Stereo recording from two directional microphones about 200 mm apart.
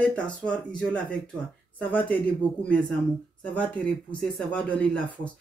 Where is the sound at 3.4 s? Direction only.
5° left (ahead or behind).